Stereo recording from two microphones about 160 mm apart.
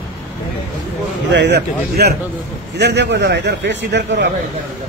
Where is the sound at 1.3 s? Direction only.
90° right.